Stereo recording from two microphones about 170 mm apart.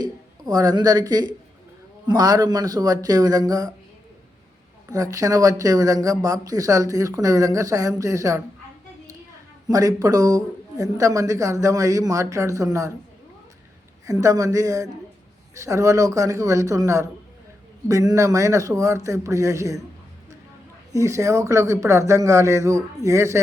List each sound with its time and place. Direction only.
0.0 s speech: 20° right (ahead or behind)
4.9 s speech: 20° right (ahead or behind)
9.6 s speech: 20° right (ahead or behind)
14.1 s speech: 20° right (ahead or behind)
20.9 s speech: 20° right (ahead or behind)